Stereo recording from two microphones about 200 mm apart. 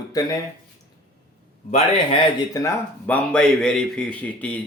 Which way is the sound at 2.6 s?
10° left (ahead or behind).